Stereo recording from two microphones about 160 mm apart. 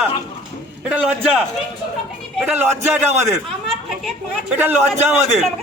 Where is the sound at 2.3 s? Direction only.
10° right (ahead or behind).